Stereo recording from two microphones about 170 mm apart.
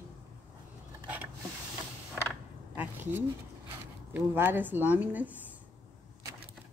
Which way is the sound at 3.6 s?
10° right (ahead or behind).